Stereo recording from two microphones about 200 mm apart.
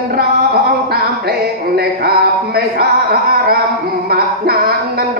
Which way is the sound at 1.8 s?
50° right (ahead or behind).